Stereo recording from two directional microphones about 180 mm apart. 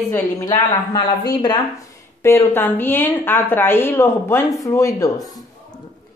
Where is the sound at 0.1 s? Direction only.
25° left (ahead or behind).